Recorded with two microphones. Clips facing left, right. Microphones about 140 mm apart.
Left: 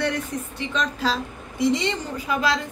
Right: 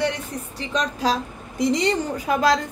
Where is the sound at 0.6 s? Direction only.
40° right (ahead or behind).